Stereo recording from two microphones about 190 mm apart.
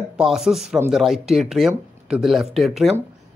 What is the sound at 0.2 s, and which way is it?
Speech, centre (ahead or behind).